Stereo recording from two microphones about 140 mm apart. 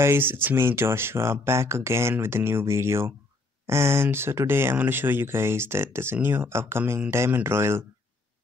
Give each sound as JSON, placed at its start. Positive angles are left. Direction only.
{"t": 0.0, "sound": "speech", "side_deg": -15}